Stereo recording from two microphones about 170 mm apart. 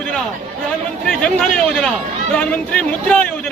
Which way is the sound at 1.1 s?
5° left (ahead or behind).